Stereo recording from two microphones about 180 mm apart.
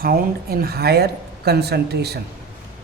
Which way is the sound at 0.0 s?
55° right (ahead or behind).